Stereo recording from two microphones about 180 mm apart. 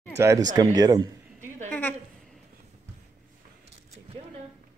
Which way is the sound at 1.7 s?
10° left (ahead or behind).